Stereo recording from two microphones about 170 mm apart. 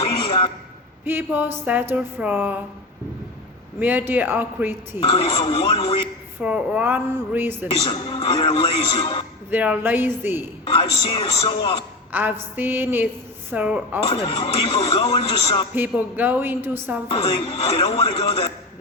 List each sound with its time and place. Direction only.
0.2 s a sound: 30° left (ahead or behind)
1.0 s a woman's voice: 10° right (ahead or behind)
3.8 s a woman's voice: 10° right (ahead or behind)
4.9 s speech: 30° left (ahead or behind)
6.4 s a woman's voice: 5° right (ahead or behind)
7.9 s speech: 30° left (ahead or behind)
9.5 s a woman's voice: 10° right (ahead or behind)
10.7 s speech: 30° left (ahead or behind)
12.1 s a woman's voice: 10° right (ahead or behind)
14.1 s speech: 30° left (ahead or behind)
15.7 s a woman's voice: 10° right (ahead or behind)
17.1 s speech: 30° left (ahead or behind)